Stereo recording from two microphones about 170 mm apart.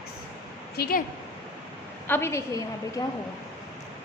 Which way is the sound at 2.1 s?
15° left (ahead or behind).